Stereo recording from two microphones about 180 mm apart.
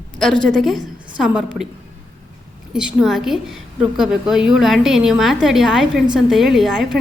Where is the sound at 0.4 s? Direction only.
Centre (ahead or behind).